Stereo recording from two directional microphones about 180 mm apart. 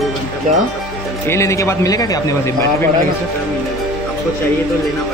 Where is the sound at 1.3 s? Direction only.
15° left (ahead or behind).